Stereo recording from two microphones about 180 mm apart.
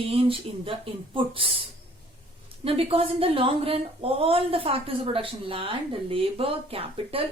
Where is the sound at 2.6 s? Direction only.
30° right (ahead or behind).